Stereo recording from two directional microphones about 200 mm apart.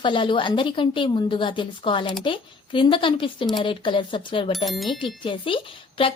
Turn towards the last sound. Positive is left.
turn(degrees=25)  # may be behind; listen again after turning